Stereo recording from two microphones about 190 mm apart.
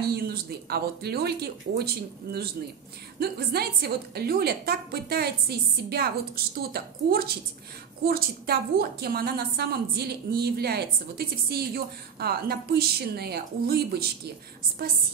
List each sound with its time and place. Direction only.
0.1 s a woman's voice: 55° right (ahead or behind)
3.2 s a woman's voice: 55° right (ahead or behind)